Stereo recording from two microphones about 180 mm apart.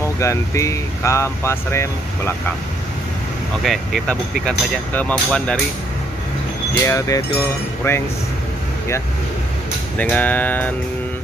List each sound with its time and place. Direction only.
0.2 s speech: 15° left (ahead or behind)
3.6 s speech: centre (ahead or behind)
6.8 s speech: 15° left (ahead or behind)
9.9 s speech: 10° left (ahead or behind)